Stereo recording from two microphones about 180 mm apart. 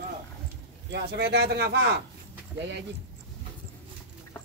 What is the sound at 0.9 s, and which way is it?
Speech, 65° right (ahead or behind).